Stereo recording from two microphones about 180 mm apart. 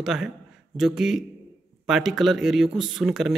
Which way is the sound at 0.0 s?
5° right (ahead or behind).